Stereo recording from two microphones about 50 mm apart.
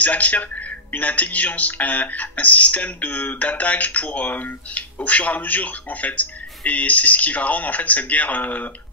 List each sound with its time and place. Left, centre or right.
0.0 s a man's voice: left